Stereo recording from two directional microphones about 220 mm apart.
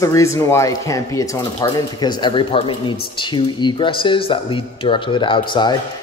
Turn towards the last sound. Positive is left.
turn(degrees=20)  # may be behind; listen again after turning